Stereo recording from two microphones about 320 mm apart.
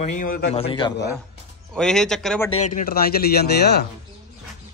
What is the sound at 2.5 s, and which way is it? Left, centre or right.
Speech, left.